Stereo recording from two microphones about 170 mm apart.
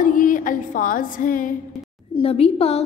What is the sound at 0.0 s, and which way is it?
Music, 50° left (ahead or behind).